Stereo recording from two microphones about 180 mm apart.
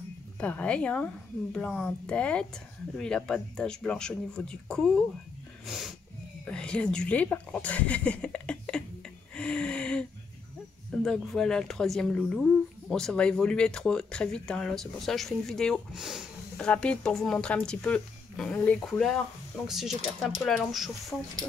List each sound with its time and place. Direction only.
0.4 s speech: 5° left (ahead or behind)
9.3 s gasp: 5° left (ahead or behind)
11.0 s speech: 5° left (ahead or behind)